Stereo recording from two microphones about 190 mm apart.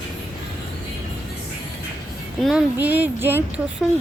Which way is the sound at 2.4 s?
5° right (ahead or behind).